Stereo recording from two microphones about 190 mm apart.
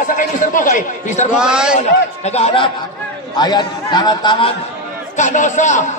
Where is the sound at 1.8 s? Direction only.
35° left (ahead or behind).